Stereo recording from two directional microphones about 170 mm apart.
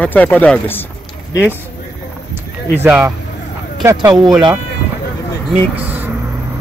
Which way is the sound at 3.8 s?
15° right (ahead or behind).